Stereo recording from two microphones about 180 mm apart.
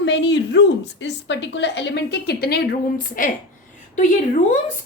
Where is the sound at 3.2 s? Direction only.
50° left (ahead or behind).